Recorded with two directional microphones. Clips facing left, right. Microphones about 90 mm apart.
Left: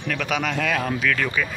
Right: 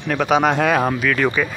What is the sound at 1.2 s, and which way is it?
Speech, 70° right (ahead or behind).